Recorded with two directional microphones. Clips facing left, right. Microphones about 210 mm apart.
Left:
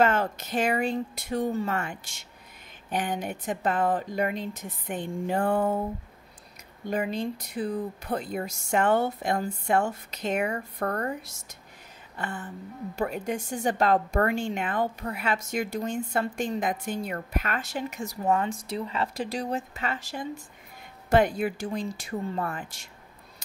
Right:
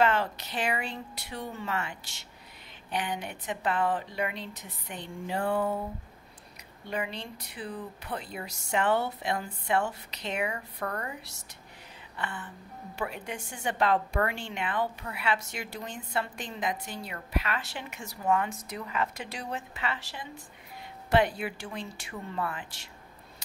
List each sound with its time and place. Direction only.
0.0 s a woman's voice: 45° left (ahead or behind)
6.9 s a woman's voice: 45° left (ahead or behind)